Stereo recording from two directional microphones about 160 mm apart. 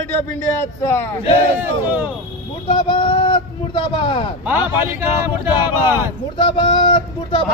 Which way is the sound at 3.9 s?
30° left (ahead or behind).